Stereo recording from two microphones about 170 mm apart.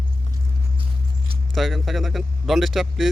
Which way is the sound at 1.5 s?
Centre (ahead or behind).